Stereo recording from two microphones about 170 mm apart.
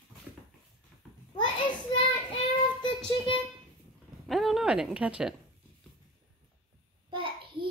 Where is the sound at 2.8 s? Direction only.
25° left (ahead or behind).